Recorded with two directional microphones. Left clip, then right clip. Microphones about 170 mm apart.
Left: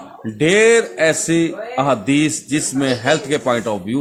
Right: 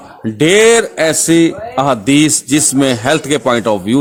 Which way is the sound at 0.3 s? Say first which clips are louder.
Right 4 dB; 50° right (ahead or behind).